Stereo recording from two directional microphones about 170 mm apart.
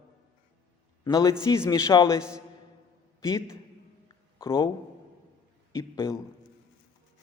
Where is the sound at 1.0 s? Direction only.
20° left (ahead or behind).